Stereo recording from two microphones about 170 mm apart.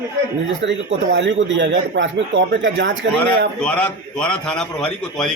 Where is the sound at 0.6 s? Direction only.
90° right.